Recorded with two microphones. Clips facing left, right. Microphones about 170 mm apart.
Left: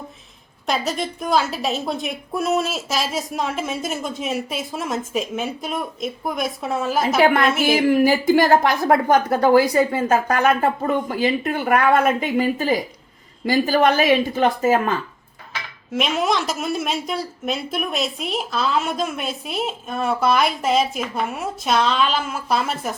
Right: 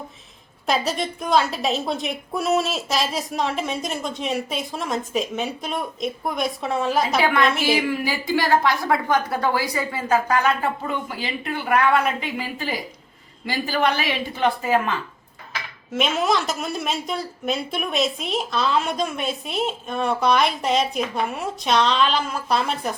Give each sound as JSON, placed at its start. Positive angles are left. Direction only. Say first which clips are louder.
{"t": 0.7, "sound": "a woman's voice", "louder": "even", "side_deg": 0}
{"t": 7.2, "sound": "a woman's voice", "louder": "left 4 dB", "side_deg": 50}
{"t": 15.9, "sound": "a woman's voice", "louder": "even", "side_deg": 0}